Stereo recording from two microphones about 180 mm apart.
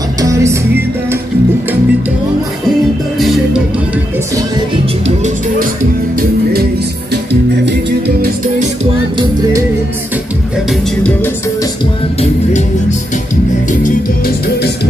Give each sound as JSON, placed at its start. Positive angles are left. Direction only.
{"t": 0.2, "sound": "music", "side_deg": -15}
{"t": 5.0, "sound": "music", "side_deg": -40}
{"t": 9.2, "sound": "music", "side_deg": -20}
{"t": 13.7, "sound": "music", "side_deg": 45}